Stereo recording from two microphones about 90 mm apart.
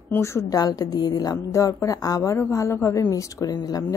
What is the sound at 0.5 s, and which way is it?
Speech, 45° left (ahead or behind).